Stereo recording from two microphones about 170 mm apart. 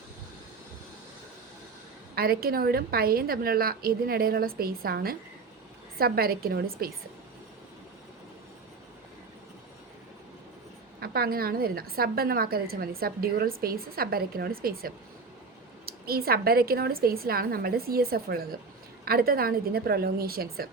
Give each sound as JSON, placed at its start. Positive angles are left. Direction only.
{"t": 2.1, "sound": "a woman's voice", "side_deg": -65}
{"t": 11.0, "sound": "a woman's voice", "side_deg": -65}